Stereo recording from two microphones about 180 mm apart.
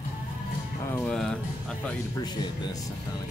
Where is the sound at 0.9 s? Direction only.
10° left (ahead or behind).